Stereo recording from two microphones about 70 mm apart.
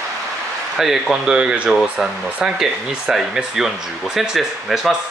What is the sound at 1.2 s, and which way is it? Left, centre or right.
Speech, centre.